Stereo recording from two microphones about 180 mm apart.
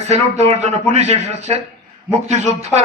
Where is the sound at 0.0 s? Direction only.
40° right (ahead or behind).